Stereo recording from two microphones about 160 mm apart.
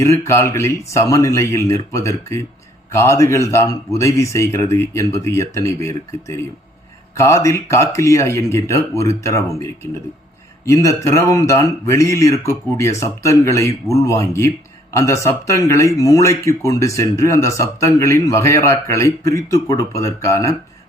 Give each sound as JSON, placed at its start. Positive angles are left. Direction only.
{"t": 0.0, "sound": "speech", "side_deg": 20}